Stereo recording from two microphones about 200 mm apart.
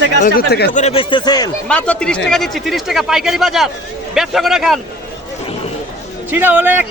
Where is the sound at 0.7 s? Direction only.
30° left (ahead or behind).